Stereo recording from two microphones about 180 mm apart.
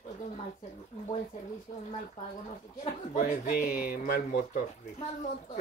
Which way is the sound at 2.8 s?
45° left (ahead or behind).